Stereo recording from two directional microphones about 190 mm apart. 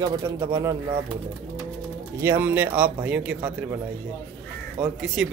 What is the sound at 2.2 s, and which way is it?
Speech, 10° right (ahead or behind).